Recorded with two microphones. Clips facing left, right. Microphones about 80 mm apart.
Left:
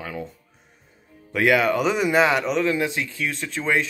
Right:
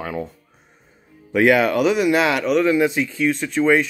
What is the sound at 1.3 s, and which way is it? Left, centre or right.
Speech, centre.